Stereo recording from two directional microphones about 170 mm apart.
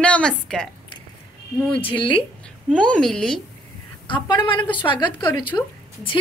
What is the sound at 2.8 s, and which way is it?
Speech, 5° left (ahead or behind).